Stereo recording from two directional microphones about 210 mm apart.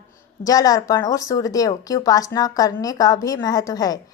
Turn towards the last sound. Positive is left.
turn(degrees=15)  # may be behind; listen again after turning